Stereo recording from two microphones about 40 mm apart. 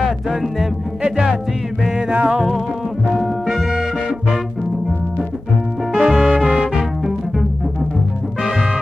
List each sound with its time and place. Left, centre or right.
0.3 s music: centre
1.0 s music: centre
5.9 s music: centre
8.4 s music: centre